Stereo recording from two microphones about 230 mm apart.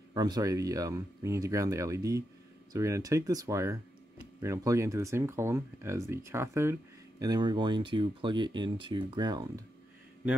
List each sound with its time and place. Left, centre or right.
0.1 s speech: centre